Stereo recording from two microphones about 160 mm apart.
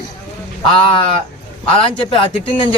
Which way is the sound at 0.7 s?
30° left (ahead or behind).